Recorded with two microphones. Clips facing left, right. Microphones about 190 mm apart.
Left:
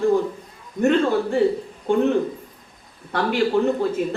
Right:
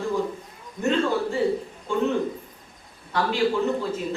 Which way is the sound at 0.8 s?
55° left (ahead or behind).